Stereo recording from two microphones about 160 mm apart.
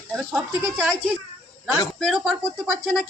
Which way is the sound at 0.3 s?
10° right (ahead or behind).